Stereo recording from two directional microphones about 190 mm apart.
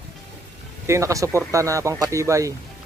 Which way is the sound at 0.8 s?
15° right (ahead or behind).